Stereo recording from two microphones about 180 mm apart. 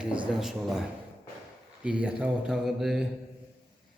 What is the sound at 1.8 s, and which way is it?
Speech, 5° right (ahead or behind).